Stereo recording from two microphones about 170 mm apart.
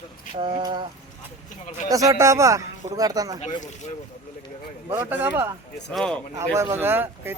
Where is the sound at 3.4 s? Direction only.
45° left (ahead or behind).